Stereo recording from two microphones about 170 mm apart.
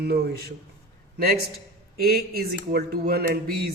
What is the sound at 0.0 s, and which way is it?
A man's voice, 70° right (ahead or behind).